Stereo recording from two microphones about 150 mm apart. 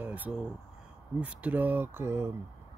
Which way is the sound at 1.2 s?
10° right (ahead or behind).